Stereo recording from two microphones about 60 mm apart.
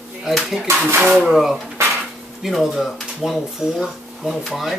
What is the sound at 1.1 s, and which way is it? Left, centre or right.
Speech, centre.